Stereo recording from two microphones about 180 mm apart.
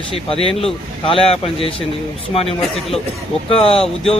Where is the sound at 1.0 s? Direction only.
30° left (ahead or behind).